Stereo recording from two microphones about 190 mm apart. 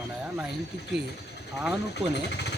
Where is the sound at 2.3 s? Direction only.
60° left (ahead or behind).